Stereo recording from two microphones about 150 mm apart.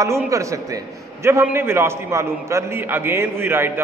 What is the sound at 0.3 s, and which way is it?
A man's voice, 20° right (ahead or behind).